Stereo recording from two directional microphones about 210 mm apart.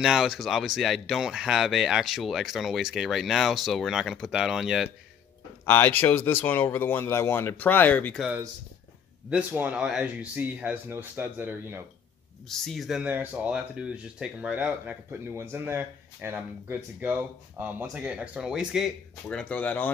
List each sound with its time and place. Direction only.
0.0 s speech: centre (ahead or behind)
5.7 s speech: 10° left (ahead or behind)
9.3 s speech: 5° right (ahead or behind)
12.4 s speech: centre (ahead or behind)